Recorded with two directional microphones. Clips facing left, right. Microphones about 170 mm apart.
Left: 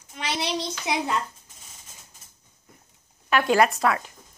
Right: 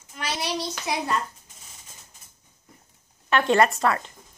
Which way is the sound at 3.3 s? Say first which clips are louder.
Even; 5° left (ahead or behind).